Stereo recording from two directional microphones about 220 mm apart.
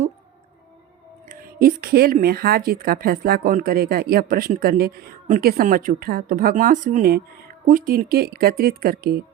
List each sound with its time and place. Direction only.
1.3 s speech: 40° right (ahead or behind)